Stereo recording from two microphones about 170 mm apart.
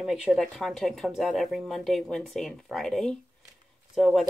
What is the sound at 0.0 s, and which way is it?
Speech, centre (ahead or behind).